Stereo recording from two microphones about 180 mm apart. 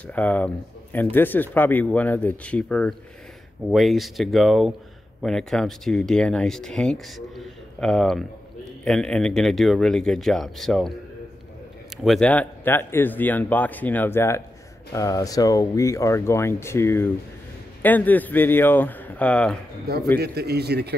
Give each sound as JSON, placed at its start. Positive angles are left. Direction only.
{"t": 0.0, "sound": "speech", "side_deg": 10}
{"t": 12.0, "sound": "speech", "side_deg": 5}
{"t": 20.2, "sound": "a man's voice", "side_deg": -65}